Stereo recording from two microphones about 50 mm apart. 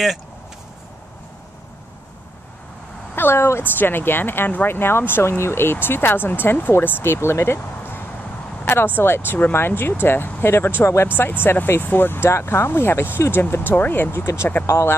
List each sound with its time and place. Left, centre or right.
3.2 s a woman's voice: left
3.6 s speech: left
12.3 s speech: left